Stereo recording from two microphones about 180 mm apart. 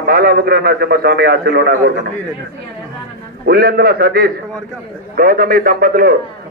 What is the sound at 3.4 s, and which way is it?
A man's voice, 60° right (ahead or behind).